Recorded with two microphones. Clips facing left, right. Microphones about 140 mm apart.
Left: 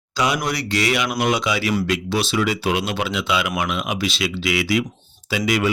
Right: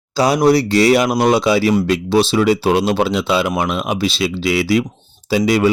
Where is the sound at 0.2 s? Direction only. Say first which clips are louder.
Right 9 dB; 35° right (ahead or behind).